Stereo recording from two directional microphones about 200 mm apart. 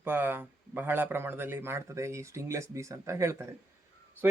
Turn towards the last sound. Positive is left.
turn(degrees=-15)  # may be behind; listen again after turning